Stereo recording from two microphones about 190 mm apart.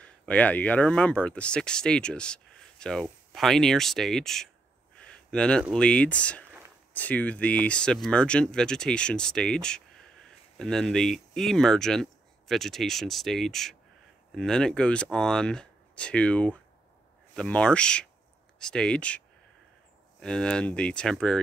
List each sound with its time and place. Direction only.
0.0 s speech: 5° left (ahead or behind)